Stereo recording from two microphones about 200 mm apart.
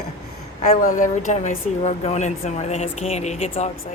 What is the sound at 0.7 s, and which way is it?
Speech, 40° left (ahead or behind).